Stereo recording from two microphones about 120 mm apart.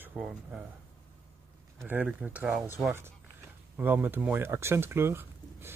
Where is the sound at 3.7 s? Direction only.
15° right (ahead or behind).